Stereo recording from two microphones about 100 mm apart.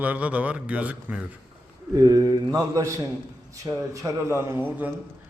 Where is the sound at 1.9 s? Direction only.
40° right (ahead or behind).